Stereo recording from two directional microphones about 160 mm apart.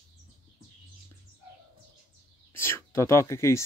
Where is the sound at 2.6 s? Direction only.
15° left (ahead or behind).